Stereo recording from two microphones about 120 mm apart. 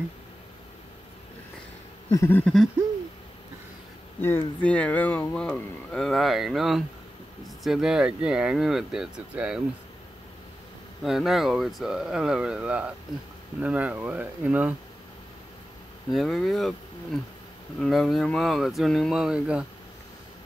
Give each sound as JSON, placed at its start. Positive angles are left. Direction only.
{"t": 2.1, "sound": "speech", "side_deg": 15}
{"t": 4.2, "sound": "speech", "side_deg": 20}
{"t": 6.0, "sound": "speech", "side_deg": 0}
{"t": 11.1, "sound": "speech", "side_deg": 0}
{"t": 16.1, "sound": "speech", "side_deg": 0}